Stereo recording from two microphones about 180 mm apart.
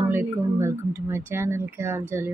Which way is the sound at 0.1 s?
15° right (ahead or behind).